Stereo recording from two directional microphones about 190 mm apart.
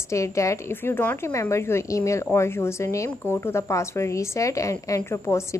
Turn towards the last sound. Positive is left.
turn(degrees=15)  # may be behind; listen again after turning